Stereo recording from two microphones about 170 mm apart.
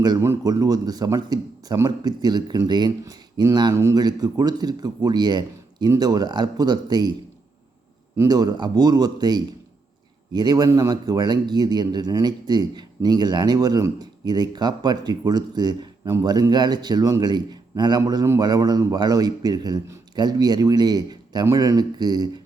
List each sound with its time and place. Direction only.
0.0 s a man's voice: 20° right (ahead or behind)
8.1 s a man's voice: 20° right (ahead or behind)